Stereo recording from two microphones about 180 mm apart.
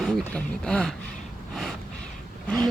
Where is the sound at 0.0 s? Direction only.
5° left (ahead or behind).